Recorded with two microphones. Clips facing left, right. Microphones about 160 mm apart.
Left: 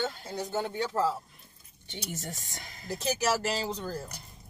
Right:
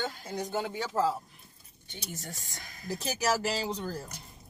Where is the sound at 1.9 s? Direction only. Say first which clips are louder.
Left 4 dB; 25° left (ahead or behind).